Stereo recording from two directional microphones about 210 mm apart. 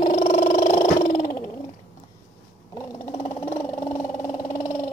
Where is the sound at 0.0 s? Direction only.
35° left (ahead or behind).